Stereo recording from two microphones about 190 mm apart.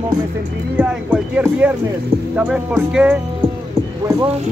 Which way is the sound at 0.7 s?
5° right (ahead or behind).